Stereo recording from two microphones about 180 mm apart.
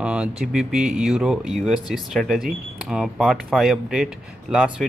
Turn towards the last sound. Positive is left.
turn(degrees=-5)  # may be behind; listen again after turning